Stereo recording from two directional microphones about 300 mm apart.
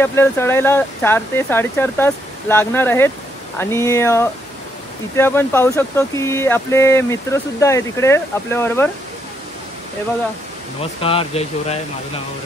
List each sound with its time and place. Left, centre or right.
0.0 s speech: centre
10.8 s speech: centre